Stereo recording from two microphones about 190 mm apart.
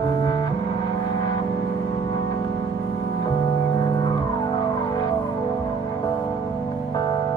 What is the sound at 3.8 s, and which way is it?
Music, 25° left (ahead or behind).